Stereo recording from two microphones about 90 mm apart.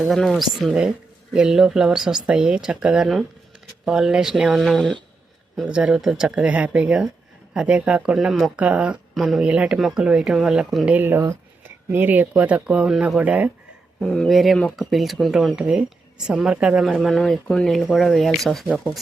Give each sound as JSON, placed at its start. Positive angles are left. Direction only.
{"t": 0.1, "sound": "speech", "side_deg": 5}
{"t": 8.5, "sound": "speech", "side_deg": -10}
{"t": 9.1, "sound": "speech", "side_deg": 0}
{"t": 9.4, "sound": "speech", "side_deg": -10}
{"t": 10.8, "sound": "speech", "side_deg": -20}
{"t": 14.0, "sound": "speech", "side_deg": 10}